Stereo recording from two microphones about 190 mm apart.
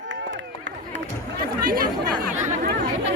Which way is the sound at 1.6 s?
50° right (ahead or behind).